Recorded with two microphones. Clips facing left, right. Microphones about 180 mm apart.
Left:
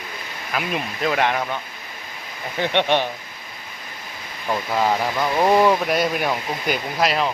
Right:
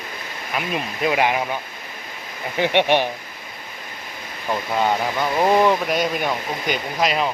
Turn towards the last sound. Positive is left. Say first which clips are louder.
# even
turn(degrees=0)  # may be behind; listen again after turning